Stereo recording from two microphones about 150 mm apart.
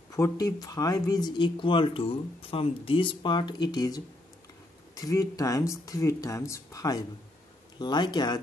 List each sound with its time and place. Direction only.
0.1 s speech: 20° left (ahead or behind)